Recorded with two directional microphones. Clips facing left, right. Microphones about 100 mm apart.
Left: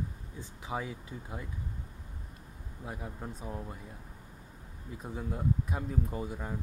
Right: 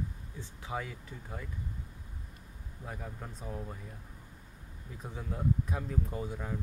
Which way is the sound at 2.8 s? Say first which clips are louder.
Left 2 dB; 10° left (ahead or behind).